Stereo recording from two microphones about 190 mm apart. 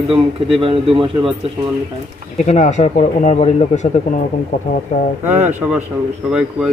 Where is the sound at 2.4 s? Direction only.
40° left (ahead or behind).